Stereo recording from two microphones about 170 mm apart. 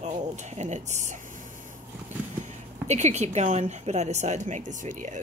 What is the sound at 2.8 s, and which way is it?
A woman's voice, 40° right (ahead or behind).